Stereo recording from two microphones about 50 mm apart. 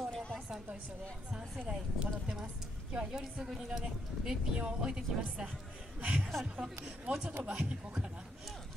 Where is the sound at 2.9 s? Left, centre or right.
Centre.